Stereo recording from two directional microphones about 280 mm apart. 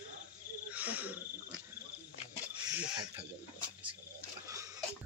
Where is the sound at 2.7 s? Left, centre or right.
Centre.